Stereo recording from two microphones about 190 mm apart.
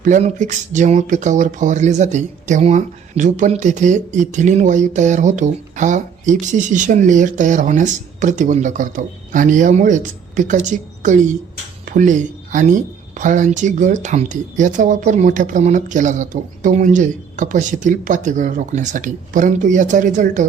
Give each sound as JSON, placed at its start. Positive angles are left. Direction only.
{"t": 0.0, "sound": "speech", "side_deg": -40}